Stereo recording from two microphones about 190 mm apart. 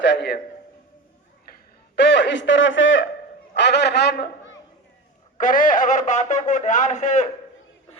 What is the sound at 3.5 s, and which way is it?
A man's voice, 65° left (ahead or behind).